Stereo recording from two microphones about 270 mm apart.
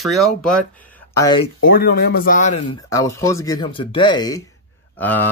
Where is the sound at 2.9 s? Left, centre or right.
Centre.